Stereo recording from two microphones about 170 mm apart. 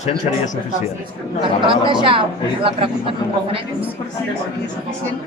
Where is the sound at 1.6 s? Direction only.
30° right (ahead or behind).